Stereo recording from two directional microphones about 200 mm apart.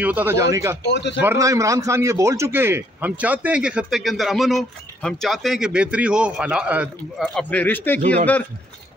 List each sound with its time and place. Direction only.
0.0 s speech: 10° right (ahead or behind)
0.9 s speech: 60° left (ahead or behind)
1.2 s speech: 15° right (ahead or behind); by 8.0 s 10° left (ahead or behind)